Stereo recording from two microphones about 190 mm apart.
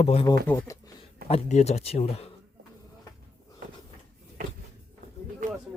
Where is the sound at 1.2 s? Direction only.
35° left (ahead or behind).